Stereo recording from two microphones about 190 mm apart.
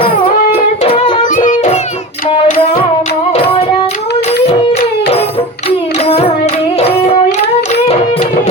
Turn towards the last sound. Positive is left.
turn(degrees=35)  # may be behind; listen again after turning